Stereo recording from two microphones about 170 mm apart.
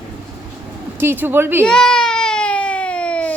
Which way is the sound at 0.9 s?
15° right (ahead or behind).